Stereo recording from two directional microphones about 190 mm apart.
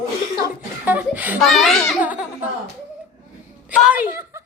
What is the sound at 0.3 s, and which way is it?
Chuckle, 20° right (ahead or behind).